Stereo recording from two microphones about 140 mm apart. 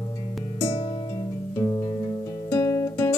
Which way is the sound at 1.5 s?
30° left (ahead or behind).